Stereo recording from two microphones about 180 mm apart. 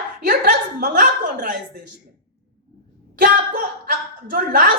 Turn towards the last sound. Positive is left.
turn(degrees=-55)  # may be behind; listen again after turning